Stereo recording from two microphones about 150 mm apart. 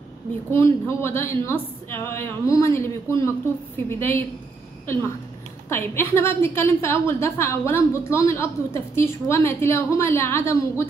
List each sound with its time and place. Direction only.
0.5 s a woman's voice: 20° left (ahead or behind)
5.7 s a woman's voice: 15° left (ahead or behind)